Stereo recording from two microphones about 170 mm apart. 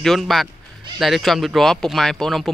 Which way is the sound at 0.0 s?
Centre (ahead or behind).